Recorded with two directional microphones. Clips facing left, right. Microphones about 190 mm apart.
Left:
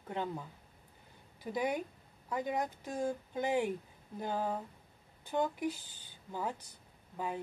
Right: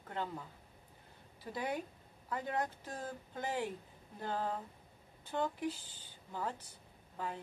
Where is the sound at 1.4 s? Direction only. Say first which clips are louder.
Left 5 dB; 15° left (ahead or behind).